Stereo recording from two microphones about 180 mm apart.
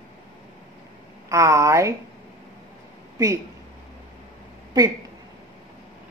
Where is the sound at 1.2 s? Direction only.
15° right (ahead or behind).